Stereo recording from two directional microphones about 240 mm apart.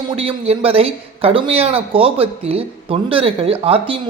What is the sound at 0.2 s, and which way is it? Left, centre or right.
Speech, right.